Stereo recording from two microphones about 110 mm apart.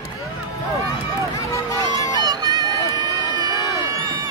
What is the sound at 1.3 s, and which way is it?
Run, 30° left (ahead or behind).